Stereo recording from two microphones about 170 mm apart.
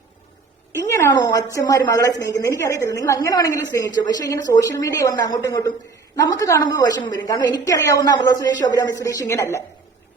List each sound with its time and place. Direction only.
0.9 s a woman's voice: 15° left (ahead or behind)